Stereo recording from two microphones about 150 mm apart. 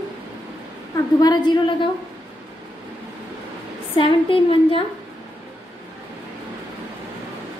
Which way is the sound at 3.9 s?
35° left (ahead or behind).